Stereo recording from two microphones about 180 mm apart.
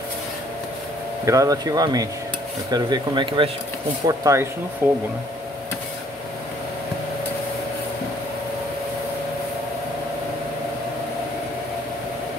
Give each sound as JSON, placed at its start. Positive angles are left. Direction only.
{"t": 1.2, "sound": "speech", "side_deg": -20}